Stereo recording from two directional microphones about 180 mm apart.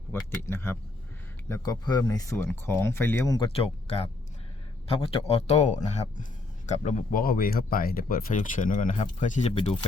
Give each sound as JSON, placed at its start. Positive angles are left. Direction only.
{"t": 0.1, "sound": "speech", "side_deg": 15}